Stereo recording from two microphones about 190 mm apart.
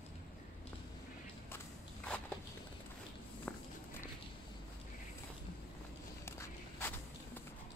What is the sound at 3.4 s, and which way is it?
Walk, 10° left (ahead or behind).